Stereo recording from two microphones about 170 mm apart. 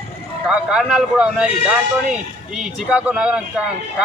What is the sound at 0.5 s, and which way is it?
A man's voice, 5° right (ahead or behind).